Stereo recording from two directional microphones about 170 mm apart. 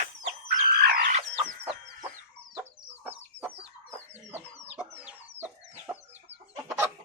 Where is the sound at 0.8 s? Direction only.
60° right (ahead or behind).